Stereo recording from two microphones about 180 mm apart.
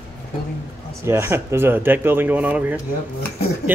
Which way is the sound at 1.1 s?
15° right (ahead or behind).